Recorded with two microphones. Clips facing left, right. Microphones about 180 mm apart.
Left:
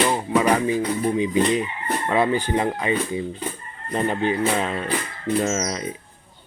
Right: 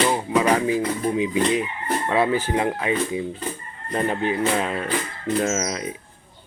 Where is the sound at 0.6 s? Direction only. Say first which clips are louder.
Even; 5° right (ahead or behind).